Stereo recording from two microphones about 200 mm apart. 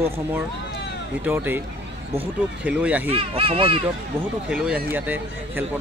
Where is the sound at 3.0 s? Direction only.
30° right (ahead or behind).